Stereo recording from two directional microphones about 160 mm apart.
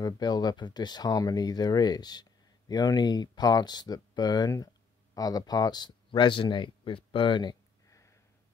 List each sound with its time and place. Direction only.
0.0 s speech: 25° left (ahead or behind)